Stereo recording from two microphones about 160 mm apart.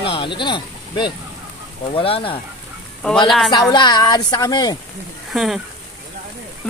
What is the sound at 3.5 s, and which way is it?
A woman's voice, 30° left (ahead or behind).